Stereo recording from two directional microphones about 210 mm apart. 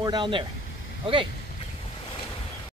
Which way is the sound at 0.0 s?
20° right (ahead or behind).